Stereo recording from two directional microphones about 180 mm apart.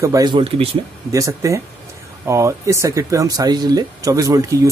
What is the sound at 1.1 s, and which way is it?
Speech, 15° right (ahead or behind).